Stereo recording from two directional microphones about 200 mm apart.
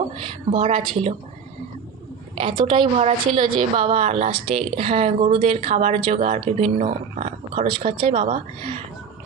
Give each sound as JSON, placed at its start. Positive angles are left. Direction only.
{"t": 0.5, "sound": "a woman's voice", "side_deg": -30}
{"t": 2.3, "sound": "a woman's voice", "side_deg": -25}
{"t": 7.6, "sound": "speech", "side_deg": -25}